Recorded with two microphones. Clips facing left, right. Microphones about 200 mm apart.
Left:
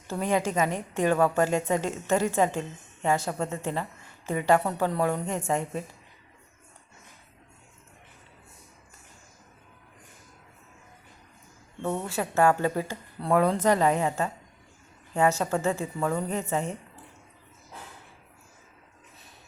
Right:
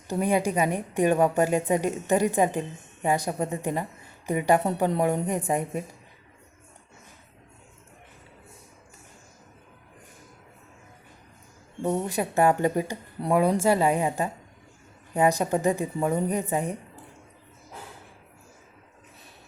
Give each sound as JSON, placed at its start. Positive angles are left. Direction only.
{"t": 0.1, "sound": "a woman's voice", "side_deg": -15}
{"t": 11.8, "sound": "a woman's voice", "side_deg": -15}